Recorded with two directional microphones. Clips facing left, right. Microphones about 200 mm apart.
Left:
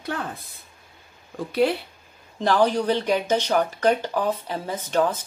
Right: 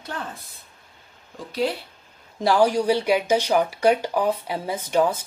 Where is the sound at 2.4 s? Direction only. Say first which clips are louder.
Right 1 dB; 10° right (ahead or behind).